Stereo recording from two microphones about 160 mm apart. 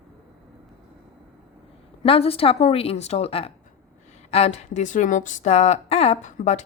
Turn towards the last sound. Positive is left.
turn(degrees=50)  # may be behind; listen again after turning